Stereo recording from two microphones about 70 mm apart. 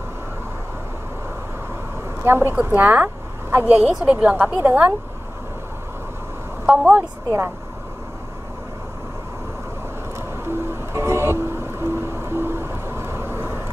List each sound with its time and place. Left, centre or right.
2.2 s a woman's voice: right
3.6 s speech: centre; by 4.9 s right
6.6 s a woman's voice: centre
10.1 s music: right